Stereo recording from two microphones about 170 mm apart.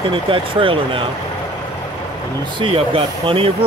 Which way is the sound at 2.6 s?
30° right (ahead or behind).